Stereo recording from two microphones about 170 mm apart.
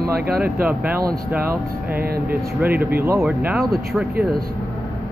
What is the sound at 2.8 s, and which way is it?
Speech, 60° right (ahead or behind).